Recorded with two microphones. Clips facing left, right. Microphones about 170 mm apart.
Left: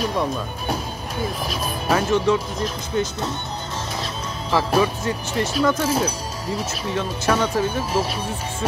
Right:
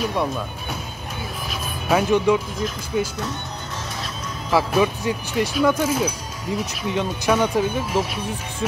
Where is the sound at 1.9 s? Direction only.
10° right (ahead or behind).